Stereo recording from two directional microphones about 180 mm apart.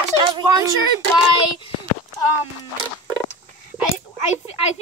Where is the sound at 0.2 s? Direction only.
25° right (ahead or behind).